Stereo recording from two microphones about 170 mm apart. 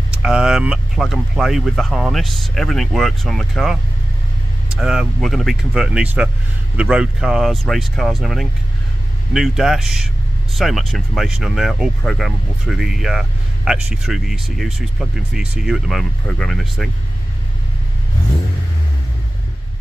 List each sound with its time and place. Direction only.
0.1 s speech: 5° right (ahead or behind)